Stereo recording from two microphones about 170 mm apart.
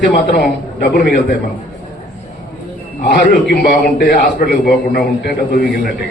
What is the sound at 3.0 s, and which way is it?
A man's voice, 65° left (ahead or behind).